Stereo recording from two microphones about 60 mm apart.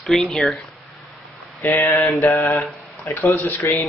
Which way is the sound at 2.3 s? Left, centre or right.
Left.